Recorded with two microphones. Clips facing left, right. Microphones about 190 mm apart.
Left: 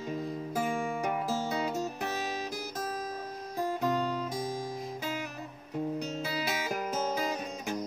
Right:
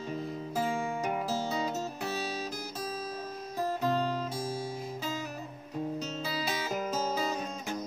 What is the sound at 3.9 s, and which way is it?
Music, 15° left (ahead or behind).